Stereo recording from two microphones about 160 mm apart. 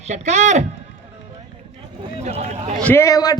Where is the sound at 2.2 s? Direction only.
45° right (ahead or behind).